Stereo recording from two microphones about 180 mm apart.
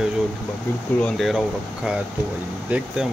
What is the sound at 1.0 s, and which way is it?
Speech, centre (ahead or behind).